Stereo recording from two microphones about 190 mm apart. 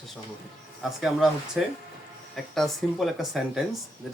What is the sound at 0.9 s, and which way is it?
Speech, centre (ahead or behind).